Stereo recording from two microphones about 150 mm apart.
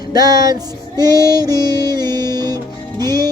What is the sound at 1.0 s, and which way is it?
Music, 25° right (ahead or behind).